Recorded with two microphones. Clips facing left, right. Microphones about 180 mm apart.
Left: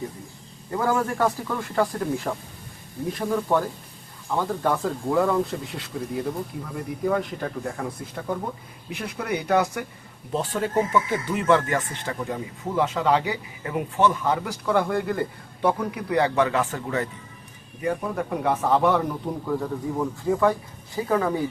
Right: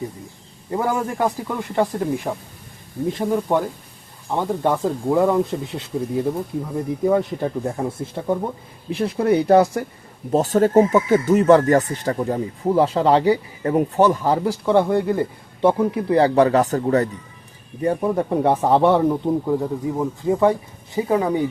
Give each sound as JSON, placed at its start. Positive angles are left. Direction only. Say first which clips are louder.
{"t": 0.7, "sound": "speech", "louder": "right 2 dB", "side_deg": -20}